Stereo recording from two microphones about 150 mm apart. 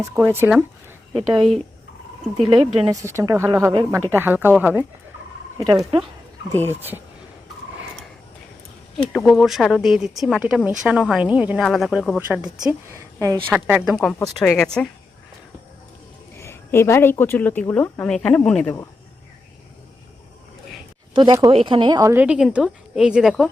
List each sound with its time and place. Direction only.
0.0 s speech: 15° right (ahead or behind)
1.3 s speech: 35° right (ahead or behind)
2.9 s speech: 20° right (ahead or behind)
5.5 s speech: 25° right (ahead or behind)
9.3 s speech: centre (ahead or behind)
11.6 s speech: centre (ahead or behind)
12.9 s a woman's voice: 20° right (ahead or behind)
13.5 s speech: 5° right (ahead or behind)
16.4 s speech: 15° left (ahead or behind)
21.1 s speech: 30° right (ahead or behind)
22.1 s speech: 10° right (ahead or behind)